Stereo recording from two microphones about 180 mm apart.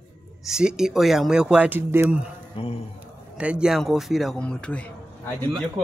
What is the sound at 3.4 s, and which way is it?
Speech, 5° right (ahead or behind).